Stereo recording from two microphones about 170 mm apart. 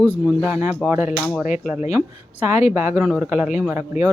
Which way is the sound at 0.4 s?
10° right (ahead or behind).